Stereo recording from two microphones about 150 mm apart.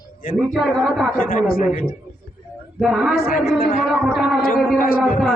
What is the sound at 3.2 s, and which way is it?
Speech, 90° left.